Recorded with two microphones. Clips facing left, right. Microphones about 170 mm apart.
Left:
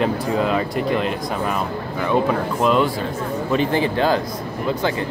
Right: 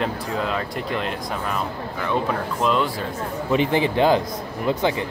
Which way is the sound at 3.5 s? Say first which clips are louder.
Even; 15° right (ahead or behind).